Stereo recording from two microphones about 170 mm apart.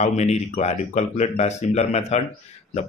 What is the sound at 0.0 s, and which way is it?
Speech, 40° left (ahead or behind).